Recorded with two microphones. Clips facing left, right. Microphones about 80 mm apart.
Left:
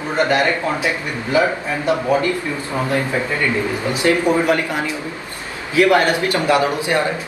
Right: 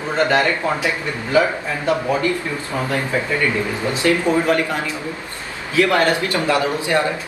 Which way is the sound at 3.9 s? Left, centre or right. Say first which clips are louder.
Left 1 dB; centre.